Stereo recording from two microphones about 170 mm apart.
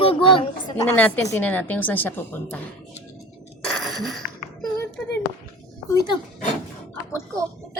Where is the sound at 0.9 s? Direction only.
10° left (ahead or behind).